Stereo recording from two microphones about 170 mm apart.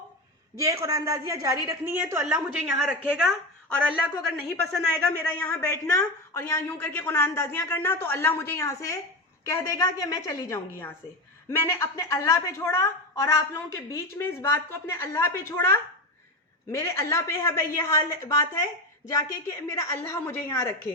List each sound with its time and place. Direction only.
0.6 s a woman's voice: 20° right (ahead or behind)
4.6 s a woman's voice: 5° left (ahead or behind)